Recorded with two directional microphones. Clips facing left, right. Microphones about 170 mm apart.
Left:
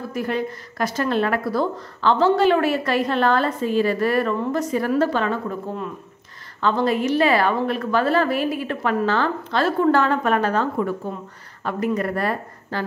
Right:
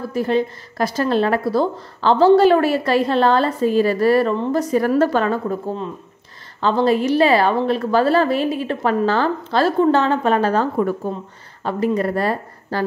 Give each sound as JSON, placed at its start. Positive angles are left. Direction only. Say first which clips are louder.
{"t": 0.1, "sound": "a woman's voice", "louder": "right 6 dB", "side_deg": -30}
{"t": 6.6, "sound": "a woman's voice", "louder": "right 3 dB", "side_deg": -30}